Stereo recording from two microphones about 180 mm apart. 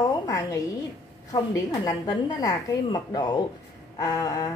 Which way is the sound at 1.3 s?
20° left (ahead or behind).